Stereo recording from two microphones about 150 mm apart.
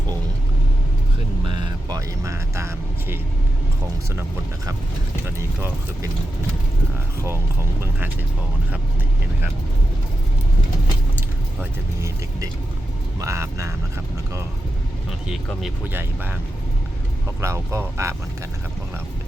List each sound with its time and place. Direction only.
1.5 s speech: 25° right (ahead or behind)
5.2 s speech: 15° right (ahead or behind)
7.8 s speech: 15° right (ahead or behind)
11.6 s speech: 20° right (ahead or behind)
15.9 s speech: 15° right (ahead or behind)
17.4 s speech: 20° right (ahead or behind)